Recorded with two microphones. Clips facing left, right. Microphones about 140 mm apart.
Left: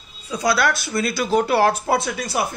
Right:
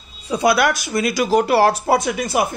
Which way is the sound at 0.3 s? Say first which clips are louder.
Right 4 dB; 20° right (ahead or behind).